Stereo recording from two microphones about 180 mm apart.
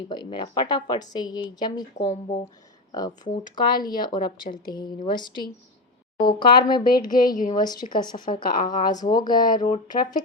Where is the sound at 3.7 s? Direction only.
25° left (ahead or behind).